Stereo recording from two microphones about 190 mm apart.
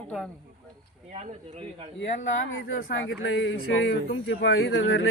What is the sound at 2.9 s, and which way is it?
Speech, 70° left (ahead or behind).